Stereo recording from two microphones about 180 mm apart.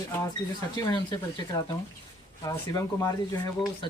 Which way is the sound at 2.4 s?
20° left (ahead or behind).